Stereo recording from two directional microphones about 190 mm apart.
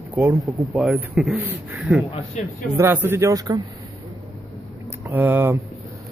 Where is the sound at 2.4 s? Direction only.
40° left (ahead or behind).